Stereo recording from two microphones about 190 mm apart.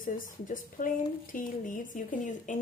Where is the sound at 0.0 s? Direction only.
45° left (ahead or behind).